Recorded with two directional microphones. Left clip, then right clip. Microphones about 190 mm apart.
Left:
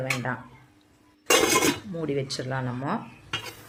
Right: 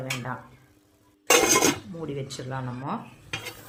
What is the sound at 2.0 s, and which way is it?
Cutlery, 10° left (ahead or behind).